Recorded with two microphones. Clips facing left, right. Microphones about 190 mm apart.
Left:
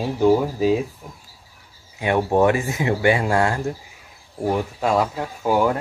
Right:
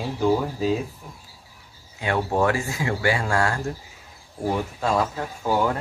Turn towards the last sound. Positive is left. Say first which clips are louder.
# left 4 dB
turn(degrees=15)  # may be behind; listen again after turning